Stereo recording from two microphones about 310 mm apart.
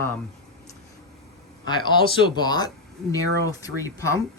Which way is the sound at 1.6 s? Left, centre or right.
Centre.